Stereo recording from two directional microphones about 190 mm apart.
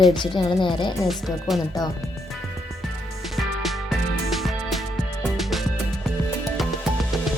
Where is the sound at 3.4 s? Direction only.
Centre (ahead or behind).